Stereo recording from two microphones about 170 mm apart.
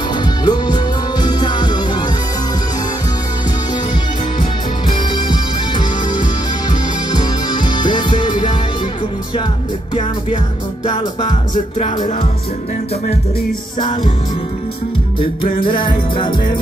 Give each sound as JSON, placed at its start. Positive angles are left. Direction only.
{"t": 0.2, "sound": "music", "side_deg": 25}
{"t": 8.1, "sound": "music", "side_deg": 45}
{"t": 11.5, "sound": "music", "side_deg": 50}
{"t": 13.7, "sound": "music", "side_deg": 25}
{"t": 15.1, "sound": "music", "side_deg": 30}